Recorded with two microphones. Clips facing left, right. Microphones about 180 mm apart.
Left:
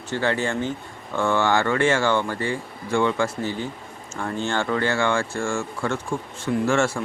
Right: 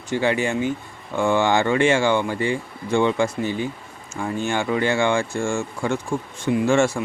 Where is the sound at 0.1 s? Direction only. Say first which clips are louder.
Right 3 dB; 15° right (ahead or behind).